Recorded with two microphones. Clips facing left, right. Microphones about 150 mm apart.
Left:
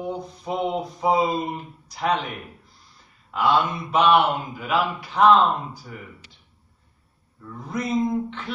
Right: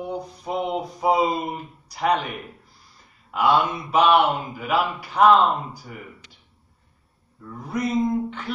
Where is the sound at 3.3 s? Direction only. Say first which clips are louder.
Right 1 dB; 5° right (ahead or behind).